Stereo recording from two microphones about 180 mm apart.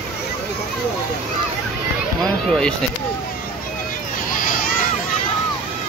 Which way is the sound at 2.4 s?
5° left (ahead or behind).